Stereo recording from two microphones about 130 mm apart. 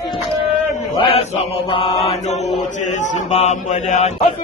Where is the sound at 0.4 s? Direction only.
45° left (ahead or behind).